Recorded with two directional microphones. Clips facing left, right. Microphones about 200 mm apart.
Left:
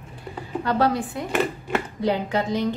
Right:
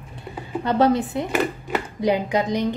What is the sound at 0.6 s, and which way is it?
A woman's voice, 20° right (ahead or behind).